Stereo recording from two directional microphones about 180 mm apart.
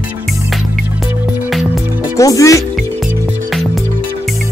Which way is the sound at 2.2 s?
20° left (ahead or behind).